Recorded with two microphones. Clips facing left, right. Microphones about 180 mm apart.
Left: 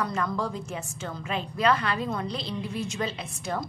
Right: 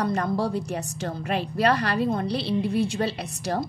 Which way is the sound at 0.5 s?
70° right (ahead or behind).